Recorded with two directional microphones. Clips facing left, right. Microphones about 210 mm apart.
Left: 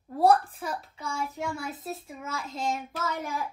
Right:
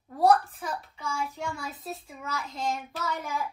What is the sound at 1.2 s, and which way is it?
Speech, centre (ahead or behind).